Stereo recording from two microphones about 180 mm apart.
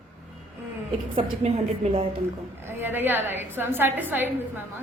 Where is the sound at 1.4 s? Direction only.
35° right (ahead or behind).